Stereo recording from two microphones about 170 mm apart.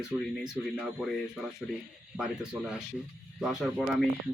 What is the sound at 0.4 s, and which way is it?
Speech, centre (ahead or behind).